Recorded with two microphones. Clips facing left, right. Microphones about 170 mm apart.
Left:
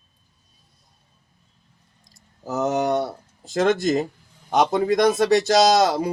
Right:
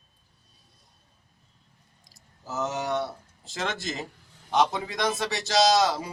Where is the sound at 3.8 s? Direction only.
45° left (ahead or behind).